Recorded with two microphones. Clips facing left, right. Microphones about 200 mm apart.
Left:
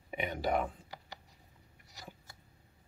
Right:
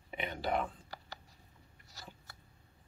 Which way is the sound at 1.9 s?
15° left (ahead or behind).